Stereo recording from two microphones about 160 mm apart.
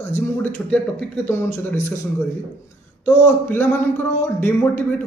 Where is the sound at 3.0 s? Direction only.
10° left (ahead or behind).